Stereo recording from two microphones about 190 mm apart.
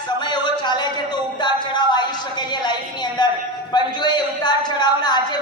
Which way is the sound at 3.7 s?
25° left (ahead or behind).